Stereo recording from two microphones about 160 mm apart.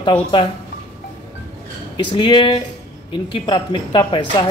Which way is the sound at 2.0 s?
30° left (ahead or behind).